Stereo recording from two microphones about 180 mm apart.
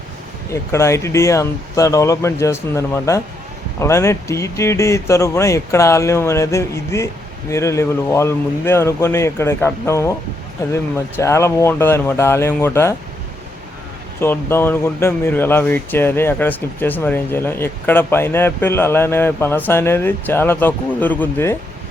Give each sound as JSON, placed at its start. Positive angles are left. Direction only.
{"t": 0.5, "sound": "speech", "side_deg": 15}
{"t": 14.2, "sound": "speech", "side_deg": 15}